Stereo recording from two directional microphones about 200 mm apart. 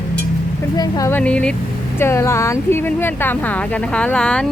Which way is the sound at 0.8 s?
15° left (ahead or behind).